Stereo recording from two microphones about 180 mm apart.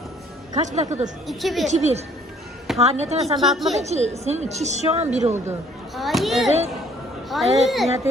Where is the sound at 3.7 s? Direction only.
40° right (ahead or behind).